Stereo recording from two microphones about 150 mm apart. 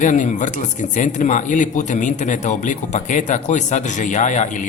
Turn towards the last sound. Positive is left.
turn(degrees=55)  # may be behind; listen again after turning